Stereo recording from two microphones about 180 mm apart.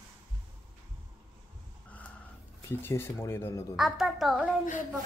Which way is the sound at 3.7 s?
Centre (ahead or behind).